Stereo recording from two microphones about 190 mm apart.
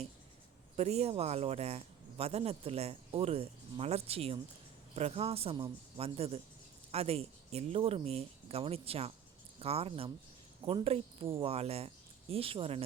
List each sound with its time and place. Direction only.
0.8 s speech: 35° right (ahead or behind)